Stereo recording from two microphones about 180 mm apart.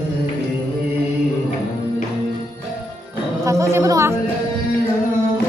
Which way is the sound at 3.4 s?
15° right (ahead or behind).